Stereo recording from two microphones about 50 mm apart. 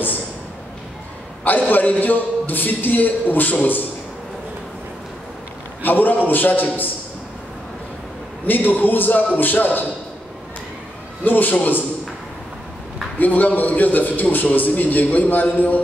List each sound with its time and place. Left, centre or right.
1.7 s a man's voice: left
5.8 s a man's voice: left
8.5 s a man's voice: left
11.2 s a man's voice: left
13.2 s a man's voice: left